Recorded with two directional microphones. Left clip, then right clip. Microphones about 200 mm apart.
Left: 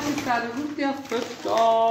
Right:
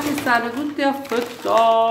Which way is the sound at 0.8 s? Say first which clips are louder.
Right 7 dB; 35° right (ahead or behind).